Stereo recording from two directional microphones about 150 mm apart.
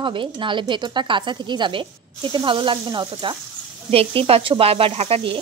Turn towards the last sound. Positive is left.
turn(degrees=-40)  # may be behind; listen again after turning